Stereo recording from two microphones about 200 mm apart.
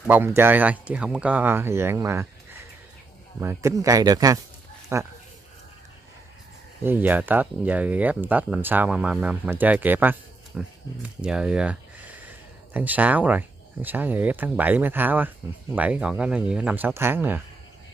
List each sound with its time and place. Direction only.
0.0 s speech: 10° right (ahead or behind)
6.8 s speech: 10° right (ahead or behind)